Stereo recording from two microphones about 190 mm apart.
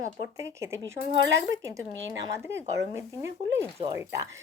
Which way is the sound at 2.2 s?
15° right (ahead or behind).